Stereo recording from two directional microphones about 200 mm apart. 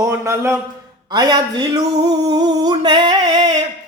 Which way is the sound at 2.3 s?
20° right (ahead or behind).